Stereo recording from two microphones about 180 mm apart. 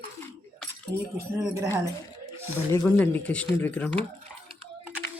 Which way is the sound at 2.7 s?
10° left (ahead or behind).